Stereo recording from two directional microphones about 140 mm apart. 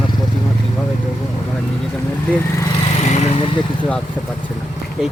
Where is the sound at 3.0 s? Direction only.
55° left (ahead or behind).